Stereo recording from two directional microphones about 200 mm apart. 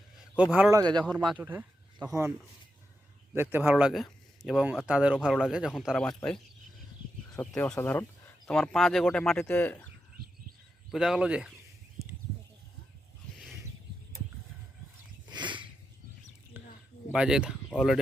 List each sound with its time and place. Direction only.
0.5 s speech: 10° right (ahead or behind)
0.8 s speech: 20° right (ahead or behind)
1.1 s speech: centre (ahead or behind)
3.3 s speech: 10° right (ahead or behind); by 9.9 s 10° left (ahead or behind)
10.9 s speech: centre (ahead or behind)
15.3 s a sound: 20° right (ahead or behind)
17.1 s speech: 5° right (ahead or behind)